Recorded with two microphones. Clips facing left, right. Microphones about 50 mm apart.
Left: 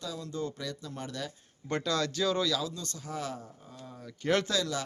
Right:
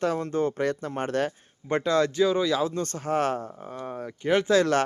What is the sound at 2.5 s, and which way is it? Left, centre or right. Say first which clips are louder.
Speech: right 8 dB; right.